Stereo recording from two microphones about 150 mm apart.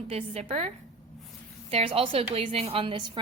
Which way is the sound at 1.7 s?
40° right (ahead or behind).